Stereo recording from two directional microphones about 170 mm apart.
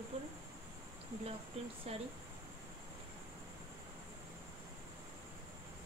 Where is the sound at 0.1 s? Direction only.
40° right (ahead or behind).